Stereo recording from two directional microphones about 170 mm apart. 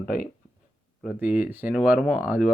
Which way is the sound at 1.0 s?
5° right (ahead or behind).